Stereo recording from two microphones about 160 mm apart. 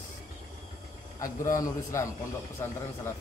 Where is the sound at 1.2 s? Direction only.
20° left (ahead or behind).